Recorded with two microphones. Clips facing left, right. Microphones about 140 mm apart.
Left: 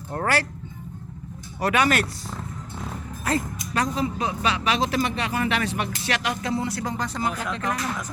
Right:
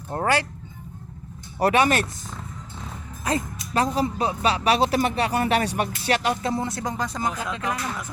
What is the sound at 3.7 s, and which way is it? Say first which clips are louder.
A man's voice: right 2 dB; 30° right (ahead or behind).